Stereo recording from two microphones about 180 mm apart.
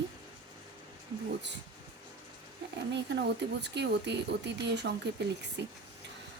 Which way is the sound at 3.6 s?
70° right (ahead or behind).